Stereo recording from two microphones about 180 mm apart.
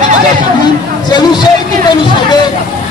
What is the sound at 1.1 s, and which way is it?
Speech, 25° left (ahead or behind).